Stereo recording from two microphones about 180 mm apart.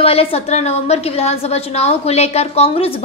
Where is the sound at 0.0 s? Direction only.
35° left (ahead or behind).